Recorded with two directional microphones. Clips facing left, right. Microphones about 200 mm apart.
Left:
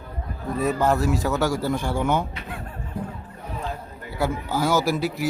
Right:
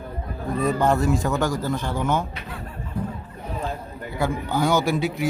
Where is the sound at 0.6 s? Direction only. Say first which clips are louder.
Right 1 dB; 5° left (ahead or behind).